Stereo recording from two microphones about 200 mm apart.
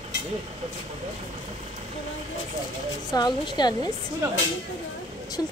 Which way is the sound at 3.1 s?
20° left (ahead or behind).